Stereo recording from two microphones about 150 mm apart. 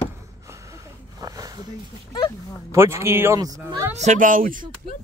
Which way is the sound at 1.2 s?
25° right (ahead or behind).